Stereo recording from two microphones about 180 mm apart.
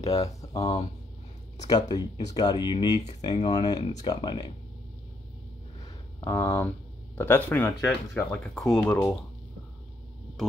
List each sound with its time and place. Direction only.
0.0 s speech: 20° left (ahead or behind)
1.9 s speech: 20° left (ahead or behind)
6.2 s speech: 15° left (ahead or behind)